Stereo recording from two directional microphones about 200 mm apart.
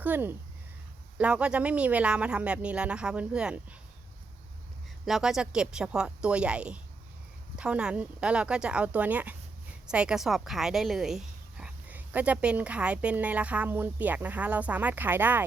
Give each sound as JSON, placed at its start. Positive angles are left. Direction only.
{"t": 0.0, "sound": "speech", "side_deg": -10}
{"t": 5.0, "sound": "speech", "side_deg": 0}